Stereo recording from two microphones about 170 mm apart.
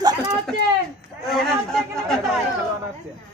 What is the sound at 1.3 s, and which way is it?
Speech, centre (ahead or behind).